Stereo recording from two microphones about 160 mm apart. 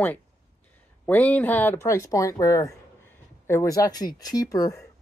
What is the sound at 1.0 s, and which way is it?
Speech, 10° left (ahead or behind).